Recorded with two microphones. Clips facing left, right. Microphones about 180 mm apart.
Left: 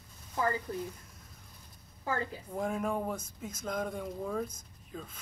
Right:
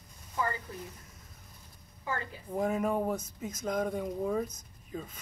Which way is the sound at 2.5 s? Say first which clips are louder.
Right 5 dB; 5° right (ahead or behind).